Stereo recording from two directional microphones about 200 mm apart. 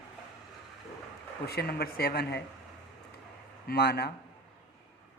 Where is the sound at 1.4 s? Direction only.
50° left (ahead or behind).